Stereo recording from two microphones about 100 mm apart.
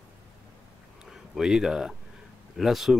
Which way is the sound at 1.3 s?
5° right (ahead or behind).